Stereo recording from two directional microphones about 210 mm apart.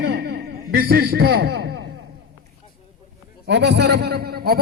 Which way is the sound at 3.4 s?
55° right (ahead or behind).